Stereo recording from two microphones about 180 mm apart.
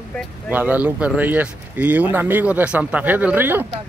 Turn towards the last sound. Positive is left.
turn(degrees=-10)  # may be behind; listen again after turning